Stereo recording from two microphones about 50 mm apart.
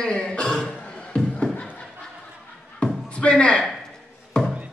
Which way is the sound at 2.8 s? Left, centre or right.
Left.